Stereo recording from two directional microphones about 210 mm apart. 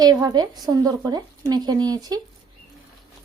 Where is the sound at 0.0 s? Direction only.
20° right (ahead or behind).